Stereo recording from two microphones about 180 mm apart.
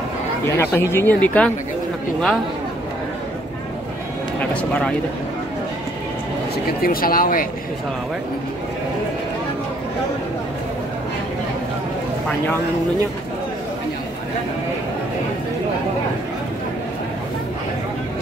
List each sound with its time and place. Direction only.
0.5 s speech: 15° left (ahead or behind)
4.4 s speech: 5° left (ahead or behind)
6.8 s speech: 55° left (ahead or behind)